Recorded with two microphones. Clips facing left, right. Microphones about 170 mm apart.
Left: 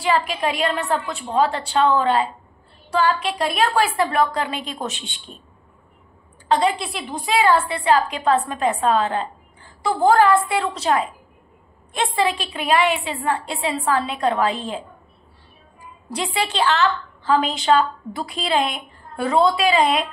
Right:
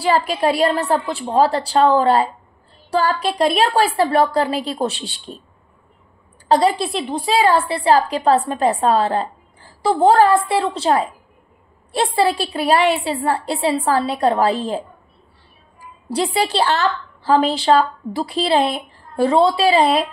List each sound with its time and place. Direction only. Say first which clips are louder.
0.0 s a woman's voice: right 4 dB; 35° right (ahead or behind)
6.5 s a woman's voice: right 4 dB; 35° right (ahead or behind)
16.1 s a woman's voice: right 5 dB; 35° right (ahead or behind)